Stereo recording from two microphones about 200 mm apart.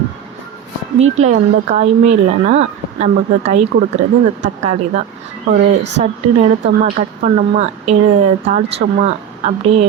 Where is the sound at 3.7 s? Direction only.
55° right (ahead or behind).